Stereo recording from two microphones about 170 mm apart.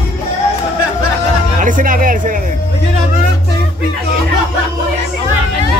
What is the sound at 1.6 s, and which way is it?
Speech, 50° right (ahead or behind).